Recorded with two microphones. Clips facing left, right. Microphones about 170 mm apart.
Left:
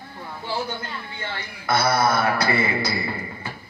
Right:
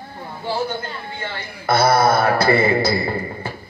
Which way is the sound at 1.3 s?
30° right (ahead or behind).